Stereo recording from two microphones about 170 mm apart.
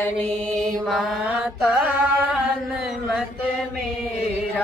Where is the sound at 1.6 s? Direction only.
10° right (ahead or behind).